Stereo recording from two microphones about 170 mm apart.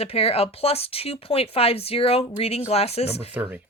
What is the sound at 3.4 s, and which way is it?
Speech, 10° right (ahead or behind).